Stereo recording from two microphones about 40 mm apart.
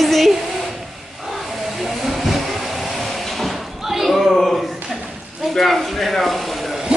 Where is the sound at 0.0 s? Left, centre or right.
Centre.